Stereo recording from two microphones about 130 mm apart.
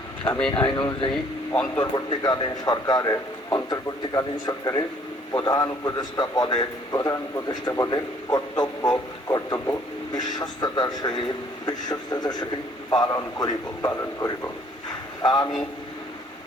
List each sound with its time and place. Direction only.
0.3 s speech: 5° left (ahead or behind)
0.5 s a man's voice: 35° left (ahead or behind)
1.1 s speech: 10° left (ahead or behind)
2.0 s a man's voice: 35° left (ahead or behind)